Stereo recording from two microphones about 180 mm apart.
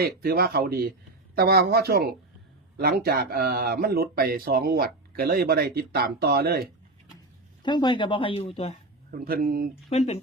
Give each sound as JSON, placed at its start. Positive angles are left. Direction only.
{"t": 0.0, "sound": "speech", "side_deg": -55}
{"t": 7.6, "sound": "speech", "side_deg": 25}
{"t": 9.0, "sound": "speech", "side_deg": -55}
{"t": 9.9, "sound": "speech", "side_deg": 40}